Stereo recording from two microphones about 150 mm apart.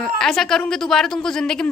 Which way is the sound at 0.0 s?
5° left (ahead or behind).